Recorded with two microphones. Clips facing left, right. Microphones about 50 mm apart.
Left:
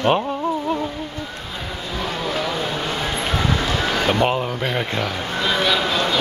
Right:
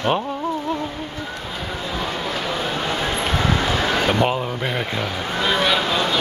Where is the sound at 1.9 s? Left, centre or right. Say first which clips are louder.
Left 2 dB; centre.